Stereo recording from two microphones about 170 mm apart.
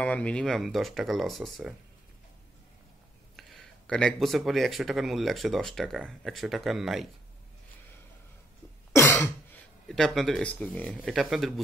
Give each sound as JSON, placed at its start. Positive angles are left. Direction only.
{"t": 0.0, "sound": "speech", "side_deg": 5}
{"t": 3.3, "sound": "speech", "side_deg": 5}
{"t": 8.9, "sound": "throat clearing", "side_deg": 15}
{"t": 9.8, "sound": "speech", "side_deg": 0}